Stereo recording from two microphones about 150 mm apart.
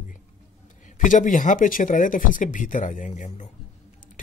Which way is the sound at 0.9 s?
60° left (ahead or behind).